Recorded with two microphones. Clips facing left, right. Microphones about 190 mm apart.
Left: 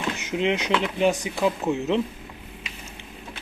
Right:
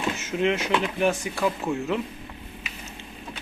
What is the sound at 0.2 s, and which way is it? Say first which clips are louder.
Speech: left 1 dB; 15° left (ahead or behind).